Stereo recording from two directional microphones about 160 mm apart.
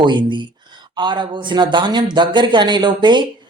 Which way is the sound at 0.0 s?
30° right (ahead or behind).